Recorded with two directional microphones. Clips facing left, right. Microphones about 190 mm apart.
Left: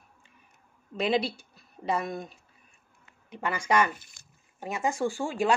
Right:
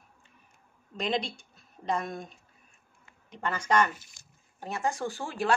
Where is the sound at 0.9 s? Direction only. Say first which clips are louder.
Left 4 dB; 5° left (ahead or behind).